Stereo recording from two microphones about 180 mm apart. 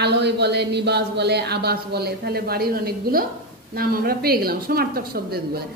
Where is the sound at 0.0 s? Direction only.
70° right (ahead or behind).